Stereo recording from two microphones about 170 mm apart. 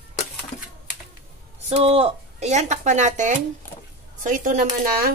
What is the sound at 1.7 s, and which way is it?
Speech, 35° right (ahead or behind).